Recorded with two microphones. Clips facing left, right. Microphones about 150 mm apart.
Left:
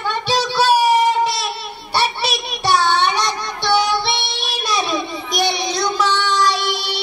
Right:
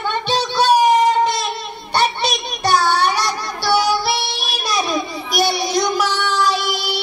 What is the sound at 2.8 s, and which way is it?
Child singing, 25° left (ahead or behind).